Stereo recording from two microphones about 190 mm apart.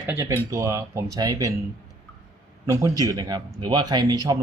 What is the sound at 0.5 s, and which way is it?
Speech, 15° right (ahead or behind).